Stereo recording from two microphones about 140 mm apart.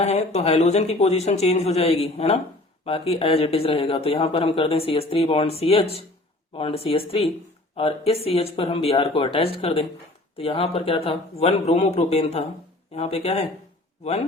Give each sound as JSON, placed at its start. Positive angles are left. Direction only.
{"t": 0.0, "sound": "a man's voice", "side_deg": 50}